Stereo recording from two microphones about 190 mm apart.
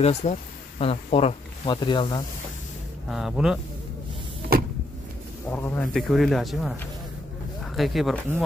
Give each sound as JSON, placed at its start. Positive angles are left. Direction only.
{"t": 0.0, "sound": "speech", "side_deg": 35}
{"t": 3.1, "sound": "speech", "side_deg": 0}
{"t": 4.5, "sound": "vehicle", "side_deg": -50}
{"t": 5.5, "sound": "speech", "side_deg": 10}